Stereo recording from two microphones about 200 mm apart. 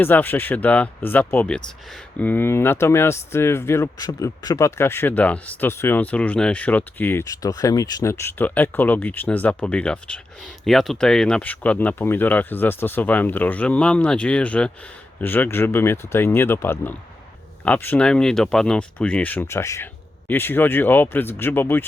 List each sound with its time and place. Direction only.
0.0 s speech: 10° left (ahead or behind)